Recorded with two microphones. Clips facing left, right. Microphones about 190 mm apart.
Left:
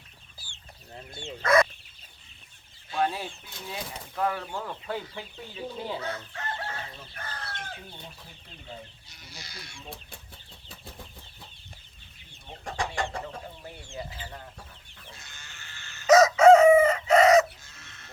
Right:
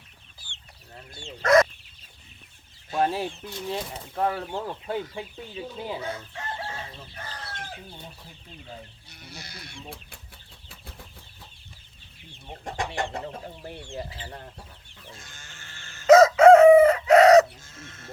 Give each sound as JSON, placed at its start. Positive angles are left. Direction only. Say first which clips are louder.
{"t": 1.2, "sound": "chicken", "louder": "right 4 dB", "side_deg": -40}
{"t": 2.9, "sound": "speech", "louder": "right 3 dB", "side_deg": -40}
{"t": 3.7, "sound": "speech", "louder": "right 5 dB", "side_deg": -30}
{"t": 6.0, "sound": "chicken", "louder": "right 1 dB", "side_deg": -25}
{"t": 7.3, "sound": "chicken", "louder": "even", "side_deg": 0}
{"t": 9.0, "sound": "speech", "louder": "right 4 dB", "side_deg": -60}
{"t": 12.6, "sound": "chicken", "louder": "right 1 dB", "side_deg": -20}
{"t": 15.1, "sound": "chicken", "louder": "right 3 dB", "side_deg": -50}
{"t": 17.7, "sound": "goose", "louder": "right 8 dB", "side_deg": -45}